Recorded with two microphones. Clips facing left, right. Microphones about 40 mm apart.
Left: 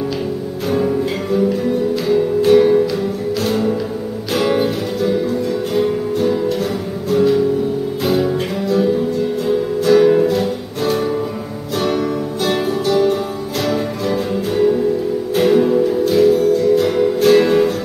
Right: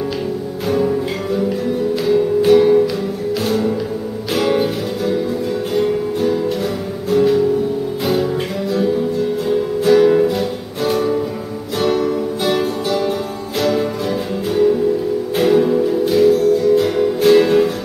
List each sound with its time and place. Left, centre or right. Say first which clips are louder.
2.0 s music: right 1 dB; centre
14.5 s music: right 1 dB; centre